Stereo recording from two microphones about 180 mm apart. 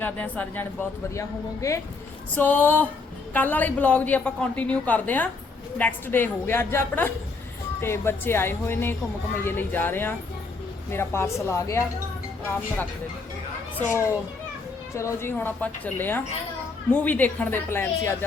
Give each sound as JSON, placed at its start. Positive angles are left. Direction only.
{"t": 0.0, "sound": "a woman's voice", "side_deg": 10}
{"t": 13.7, "sound": "a woman's voice", "side_deg": 15}